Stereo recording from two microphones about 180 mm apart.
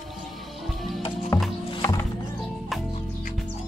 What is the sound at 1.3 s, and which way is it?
Music, 20° left (ahead or behind).